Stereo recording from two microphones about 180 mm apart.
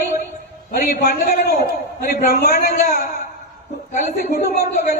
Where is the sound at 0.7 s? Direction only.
55° left (ahead or behind).